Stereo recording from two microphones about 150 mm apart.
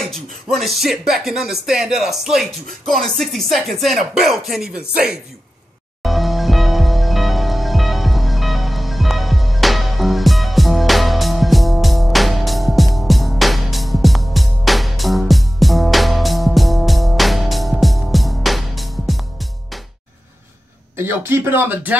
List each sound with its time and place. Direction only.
0.1 s speech: centre (ahead or behind)
6.0 s music: centre (ahead or behind)
20.9 s speech: 15° right (ahead or behind)